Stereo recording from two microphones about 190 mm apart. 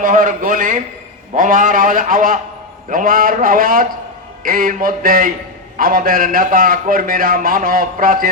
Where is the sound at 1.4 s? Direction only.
45° right (ahead or behind).